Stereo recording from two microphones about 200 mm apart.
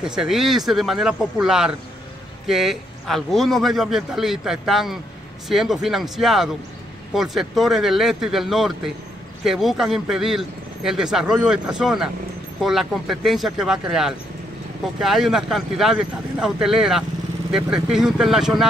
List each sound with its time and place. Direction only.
0.0 s speech: 5° right (ahead or behind)